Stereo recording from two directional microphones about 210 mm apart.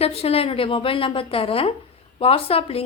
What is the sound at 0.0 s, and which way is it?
A woman's voice, 30° left (ahead or behind).